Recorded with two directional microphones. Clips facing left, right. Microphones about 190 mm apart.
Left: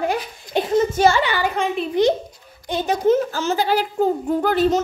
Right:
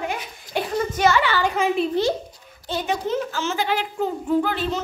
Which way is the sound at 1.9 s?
20° left (ahead or behind).